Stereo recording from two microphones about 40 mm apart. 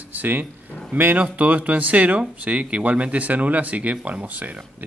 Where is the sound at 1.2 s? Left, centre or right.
Right.